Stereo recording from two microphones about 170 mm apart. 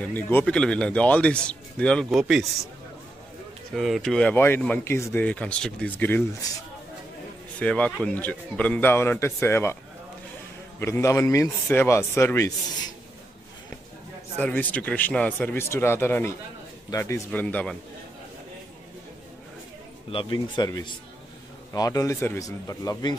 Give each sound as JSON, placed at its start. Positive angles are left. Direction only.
{"t": 0.0, "sound": "a man's voice", "side_deg": 10}
{"t": 3.7, "sound": "speech", "side_deg": 0}
{"t": 7.5, "sound": "speech", "side_deg": 5}
{"t": 10.8, "sound": "speech", "side_deg": 15}
{"t": 14.4, "sound": "speech", "side_deg": 10}
{"t": 20.1, "sound": "speech", "side_deg": 30}